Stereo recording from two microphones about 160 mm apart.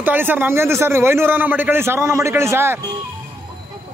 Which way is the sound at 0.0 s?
10° right (ahead or behind).